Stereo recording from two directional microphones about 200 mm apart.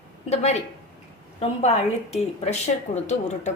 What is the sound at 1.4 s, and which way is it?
Speech, 35° left (ahead or behind).